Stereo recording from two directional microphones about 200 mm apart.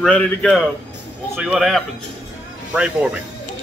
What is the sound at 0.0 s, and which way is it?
Speech, 5° left (ahead or behind).